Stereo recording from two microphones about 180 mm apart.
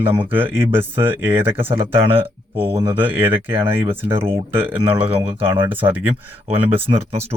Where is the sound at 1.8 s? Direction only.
30° right (ahead or behind).